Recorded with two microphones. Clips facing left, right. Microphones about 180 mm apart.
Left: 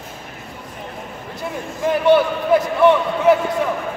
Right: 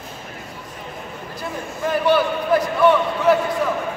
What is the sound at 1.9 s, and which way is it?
Speech, 20° left (ahead or behind).